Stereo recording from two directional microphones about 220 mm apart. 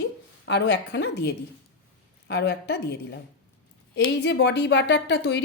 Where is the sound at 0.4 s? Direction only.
50° left (ahead or behind).